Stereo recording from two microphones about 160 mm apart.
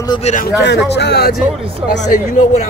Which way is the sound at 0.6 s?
90° left.